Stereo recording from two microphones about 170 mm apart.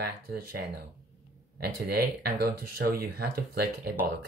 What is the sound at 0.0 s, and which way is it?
Speech, 65° right (ahead or behind).